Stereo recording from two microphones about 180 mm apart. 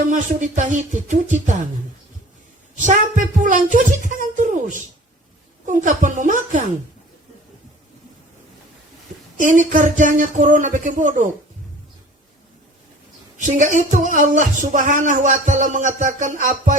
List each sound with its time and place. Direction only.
0.1 s speech: 45° right (ahead or behind)
2.7 s a woman's voice: 45° right (ahead or behind)
9.4 s speech: 45° right (ahead or behind)
13.4 s speech: 45° right (ahead or behind)